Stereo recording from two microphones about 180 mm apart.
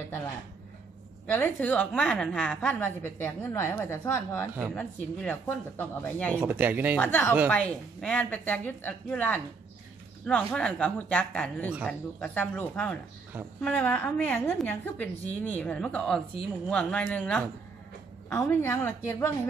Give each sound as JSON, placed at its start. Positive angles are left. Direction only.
{"t": 1.2, "sound": "a woman's voice", "side_deg": 10}
{"t": 6.3, "sound": "speech", "side_deg": -10}
{"t": 7.0, "sound": "a woman's voice", "side_deg": 10}